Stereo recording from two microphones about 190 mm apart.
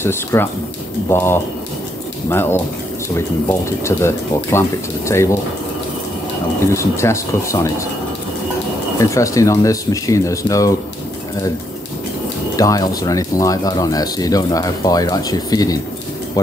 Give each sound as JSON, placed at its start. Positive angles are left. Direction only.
{"t": 0.0, "sound": "speech", "side_deg": 10}
{"t": 3.8, "sound": "speech", "side_deg": 15}
{"t": 6.7, "sound": "speech", "side_deg": 15}
{"t": 9.1, "sound": "speech", "side_deg": 15}
{"t": 12.5, "sound": "speech", "side_deg": 20}